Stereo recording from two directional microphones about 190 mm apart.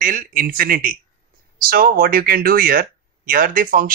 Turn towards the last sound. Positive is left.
turn(degrees=-45)  # may be behind; listen again after turning